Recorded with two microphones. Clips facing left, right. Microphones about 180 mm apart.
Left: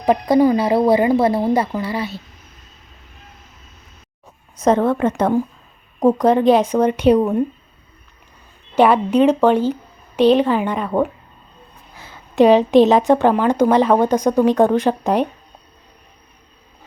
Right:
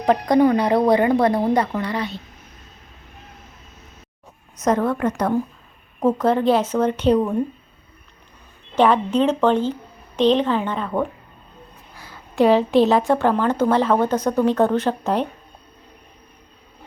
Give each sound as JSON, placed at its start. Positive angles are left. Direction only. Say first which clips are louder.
{"t": 0.0, "sound": "speech", "louder": "left 2 dB", "side_deg": 5}
{"t": 4.6, "sound": "a woman's voice", "louder": "left 4 dB", "side_deg": 25}
{"t": 6.0, "sound": "a woman's voice", "louder": "left 4 dB", "side_deg": 15}
{"t": 8.7, "sound": "a woman's voice", "louder": "left 3 dB", "side_deg": 10}